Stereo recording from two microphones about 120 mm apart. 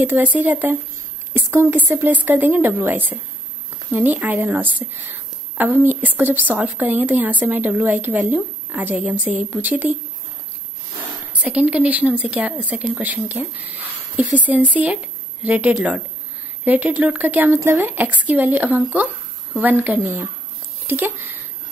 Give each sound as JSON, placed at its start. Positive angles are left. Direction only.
{"t": 0.0, "sound": "a woman's voice", "side_deg": -15}
{"t": 11.4, "sound": "a woman's voice", "side_deg": -10}